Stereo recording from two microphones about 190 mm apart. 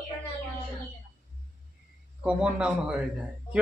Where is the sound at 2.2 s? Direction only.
5° right (ahead or behind).